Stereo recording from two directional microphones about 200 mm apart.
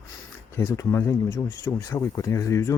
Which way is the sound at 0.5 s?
15° left (ahead or behind).